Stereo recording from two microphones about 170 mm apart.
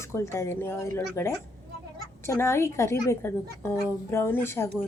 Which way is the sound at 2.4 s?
15° left (ahead or behind).